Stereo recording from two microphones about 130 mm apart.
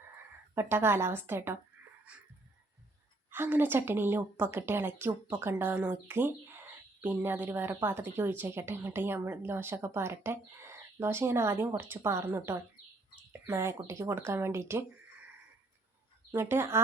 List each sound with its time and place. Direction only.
0.5 s a woman's voice: 20° right (ahead or behind)
3.2 s a woman's voice: 15° right (ahead or behind)
16.3 s speech: 15° right (ahead or behind)